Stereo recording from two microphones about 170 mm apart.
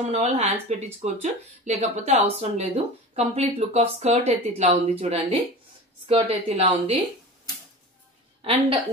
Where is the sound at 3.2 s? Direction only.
40° right (ahead or behind).